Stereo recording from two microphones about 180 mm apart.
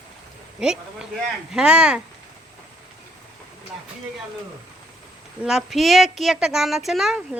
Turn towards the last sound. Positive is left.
turn(degrees=0)  # may be behind; listen again after turning